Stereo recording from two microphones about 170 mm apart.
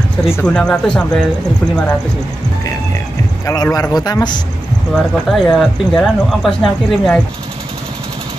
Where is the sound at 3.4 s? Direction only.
20° left (ahead or behind).